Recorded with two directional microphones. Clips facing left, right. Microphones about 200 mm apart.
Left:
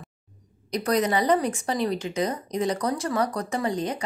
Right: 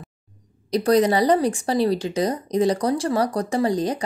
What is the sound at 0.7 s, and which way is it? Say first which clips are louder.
Speech: right 6 dB; 30° right (ahead or behind).